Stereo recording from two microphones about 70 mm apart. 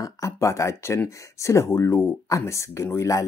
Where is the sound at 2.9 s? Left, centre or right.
Left.